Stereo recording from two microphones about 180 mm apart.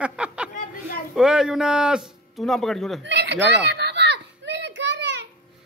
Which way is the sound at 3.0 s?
75° right (ahead or behind).